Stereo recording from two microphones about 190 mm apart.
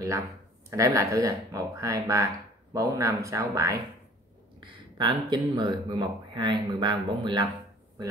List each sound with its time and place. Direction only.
0.7 s speech: 15° right (ahead or behind)